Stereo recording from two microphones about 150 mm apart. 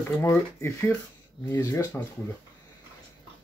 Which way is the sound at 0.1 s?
15° left (ahead or behind).